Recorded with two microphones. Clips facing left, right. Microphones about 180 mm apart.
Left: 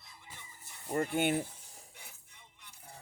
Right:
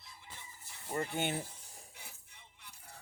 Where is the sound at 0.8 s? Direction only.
50° left (ahead or behind).